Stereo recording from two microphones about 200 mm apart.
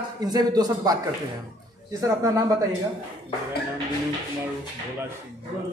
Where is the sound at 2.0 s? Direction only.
15° right (ahead or behind).